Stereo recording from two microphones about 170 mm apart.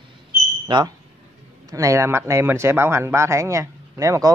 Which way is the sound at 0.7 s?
25° right (ahead or behind).